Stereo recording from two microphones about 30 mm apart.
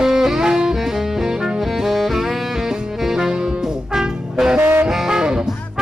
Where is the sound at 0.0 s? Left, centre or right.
Centre.